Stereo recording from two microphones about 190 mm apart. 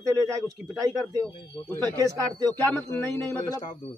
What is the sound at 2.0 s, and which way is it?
Speech, 15° right (ahead or behind).